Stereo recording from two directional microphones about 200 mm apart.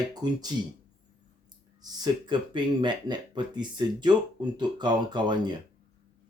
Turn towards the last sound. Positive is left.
turn(degrees=-20)  # may be behind; listen again after turning